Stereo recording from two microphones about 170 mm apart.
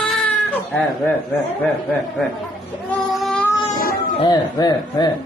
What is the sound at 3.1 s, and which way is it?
Child singing, 5° left (ahead or behind).